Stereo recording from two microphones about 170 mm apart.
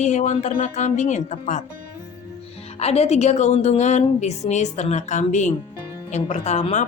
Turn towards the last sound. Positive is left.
turn(degrees=40)  # may be behind; listen again after turning